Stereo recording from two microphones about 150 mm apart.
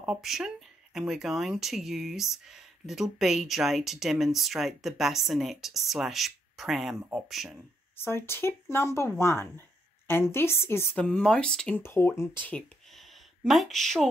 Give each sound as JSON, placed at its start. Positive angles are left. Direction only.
{"t": 0.0, "sound": "speech", "side_deg": -5}
{"t": 8.0, "sound": "speech", "side_deg": 15}
{"t": 11.8, "sound": "speech", "side_deg": 15}
{"t": 12.4, "sound": "a sound", "side_deg": 5}
{"t": 13.5, "sound": "speech", "side_deg": 0}